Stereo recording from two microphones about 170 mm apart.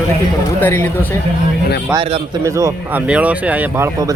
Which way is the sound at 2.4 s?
20° right (ahead or behind).